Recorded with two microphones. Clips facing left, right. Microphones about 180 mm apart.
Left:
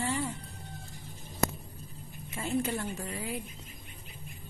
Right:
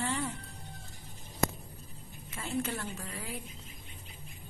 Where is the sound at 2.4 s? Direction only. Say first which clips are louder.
Left 4 dB; 15° left (ahead or behind).